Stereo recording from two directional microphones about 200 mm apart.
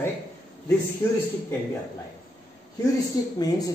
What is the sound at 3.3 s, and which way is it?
Speech, 20° left (ahead or behind).